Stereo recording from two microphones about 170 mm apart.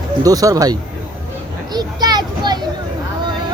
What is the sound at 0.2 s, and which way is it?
Speech, 20° right (ahead or behind).